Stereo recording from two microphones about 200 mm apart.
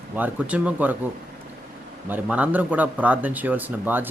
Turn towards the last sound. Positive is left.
turn(degrees=-10)  # may be behind; listen again after turning